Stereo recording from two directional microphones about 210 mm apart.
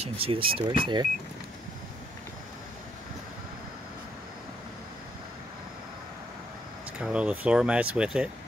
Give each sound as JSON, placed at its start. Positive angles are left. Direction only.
{"t": 0.0, "sound": "speech", "side_deg": -25}
{"t": 7.0, "sound": "speech", "side_deg": -5}